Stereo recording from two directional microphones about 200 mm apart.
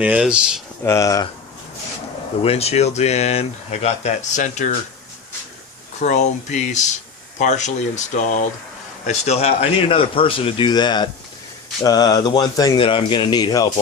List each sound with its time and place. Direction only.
0.0 s speech: 5° right (ahead or behind)
0.9 s speech: 15° left (ahead or behind)
2.4 s speech: 30° left (ahead or behind)
6.0 s speech: 35° left (ahead or behind); by 13.7 s 20° left (ahead or behind)